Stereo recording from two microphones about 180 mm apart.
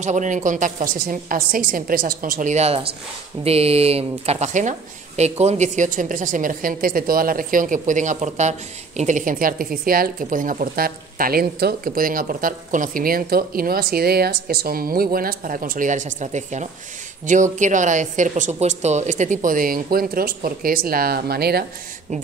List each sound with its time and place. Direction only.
0.0 s speech: 40° right (ahead or behind); by 21.6 s 60° right (ahead or behind)